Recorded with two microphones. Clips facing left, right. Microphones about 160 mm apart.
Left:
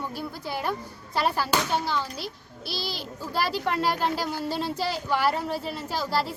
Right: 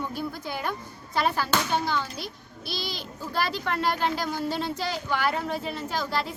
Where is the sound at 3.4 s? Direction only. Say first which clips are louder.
Left 2 dB; 5° left (ahead or behind).